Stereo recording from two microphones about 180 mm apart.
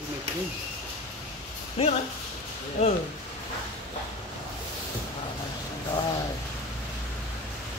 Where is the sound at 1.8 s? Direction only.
30° left (ahead or behind).